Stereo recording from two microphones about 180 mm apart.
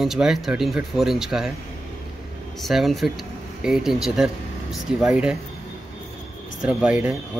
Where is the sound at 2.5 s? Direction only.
Centre (ahead or behind).